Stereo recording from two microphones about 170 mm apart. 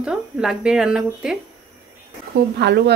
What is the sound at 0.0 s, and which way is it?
Speech, 5° right (ahead or behind).